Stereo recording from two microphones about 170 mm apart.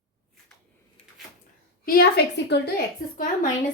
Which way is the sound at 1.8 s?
65° left (ahead or behind).